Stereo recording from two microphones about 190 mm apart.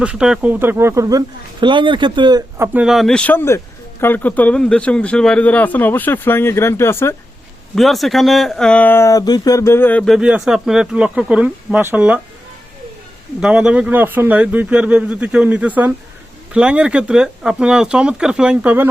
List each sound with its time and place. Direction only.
0.0 s speech: 5° right (ahead or behind); by 2.6 s 20° right (ahead or behind)
2.7 s speech: 5° right (ahead or behind); by 7.2 s 15° left (ahead or behind)
7.8 s speech: centre (ahead or behind)
13.4 s speech: 5° right (ahead or behind)